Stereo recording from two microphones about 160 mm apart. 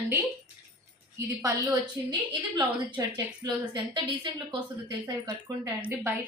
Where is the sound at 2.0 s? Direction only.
20° right (ahead or behind).